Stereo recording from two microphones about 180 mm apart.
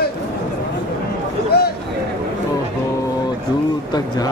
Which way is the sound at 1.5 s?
65° left (ahead or behind).